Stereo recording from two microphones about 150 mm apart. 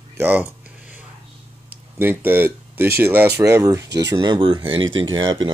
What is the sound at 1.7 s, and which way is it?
Speech, 15° right (ahead or behind).